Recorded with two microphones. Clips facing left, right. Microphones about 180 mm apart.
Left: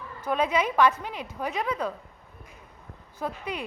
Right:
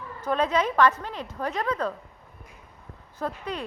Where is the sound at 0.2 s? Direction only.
10° left (ahead or behind).